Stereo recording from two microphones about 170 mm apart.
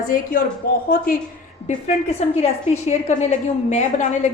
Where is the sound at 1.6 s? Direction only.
40° left (ahead or behind).